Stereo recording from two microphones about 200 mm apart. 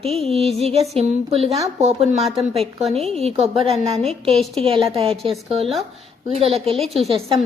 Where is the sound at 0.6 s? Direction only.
30° right (ahead or behind).